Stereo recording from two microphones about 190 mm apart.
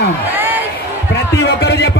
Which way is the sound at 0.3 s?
10° right (ahead or behind).